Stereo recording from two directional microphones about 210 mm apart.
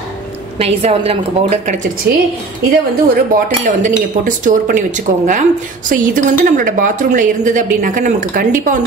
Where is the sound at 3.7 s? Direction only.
35° right (ahead or behind).